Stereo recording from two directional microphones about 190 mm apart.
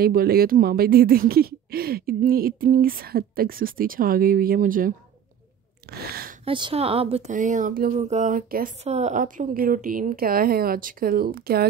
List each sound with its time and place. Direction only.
0.0 s speech: 50° right (ahead or behind)
6.4 s speech: 25° right (ahead or behind); by 8.6 s 50° right (ahead or behind)
8.8 s speech: 35° right (ahead or behind); by 11.7 s 55° right (ahead or behind)